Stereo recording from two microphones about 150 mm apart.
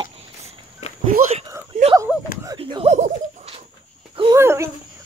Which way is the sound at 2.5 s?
35° right (ahead or behind).